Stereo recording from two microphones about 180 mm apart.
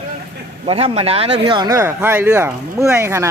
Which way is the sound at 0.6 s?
35° right (ahead or behind).